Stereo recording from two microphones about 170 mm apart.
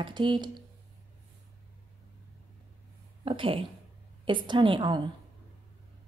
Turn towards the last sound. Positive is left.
turn(degrees=-25)  # may be behind; listen again after turning